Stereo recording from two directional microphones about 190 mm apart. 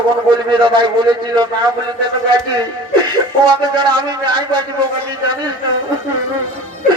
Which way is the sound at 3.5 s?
25° right (ahead or behind).